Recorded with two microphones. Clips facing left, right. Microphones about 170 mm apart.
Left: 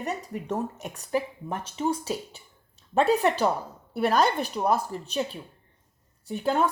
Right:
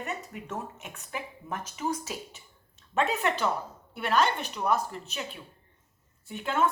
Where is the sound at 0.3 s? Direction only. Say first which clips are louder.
Left 7 dB; 35° left (ahead or behind).